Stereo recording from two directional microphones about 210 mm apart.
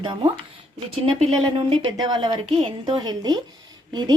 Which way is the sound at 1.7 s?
20° right (ahead or behind).